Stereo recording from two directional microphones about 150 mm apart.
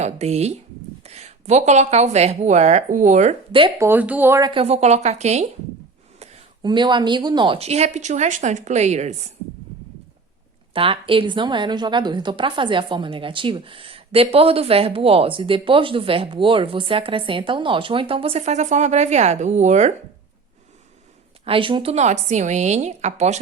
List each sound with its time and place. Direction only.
0.0 s a woman's voice: 45° right (ahead or behind)
3.8 s speech: 15° right (ahead or behind)
4.5 s a woman's voice: 45° right (ahead or behind)
6.1 s a sound: 45° right (ahead or behind)
6.6 s a woman's voice: 30° right (ahead or behind); by 9.1 s 50° right (ahead or behind)
10.8 s a woman's voice: 35° right (ahead or behind)
21.4 s a woman's voice: 35° right (ahead or behind)